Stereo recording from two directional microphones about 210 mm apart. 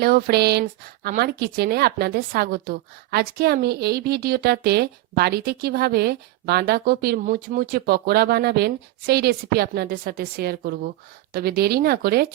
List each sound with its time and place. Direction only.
0.0 s a woman's voice: 45° right (ahead or behind)